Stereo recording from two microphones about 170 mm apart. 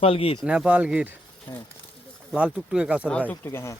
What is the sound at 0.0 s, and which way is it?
Speech, 35° left (ahead or behind).